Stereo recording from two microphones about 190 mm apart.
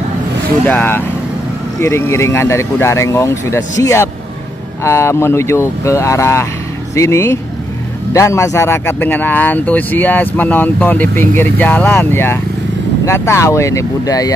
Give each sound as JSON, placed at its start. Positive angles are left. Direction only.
{"t": 0.7, "sound": "speech", "side_deg": 10}